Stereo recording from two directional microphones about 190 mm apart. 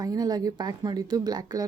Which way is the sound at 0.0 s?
20° right (ahead or behind).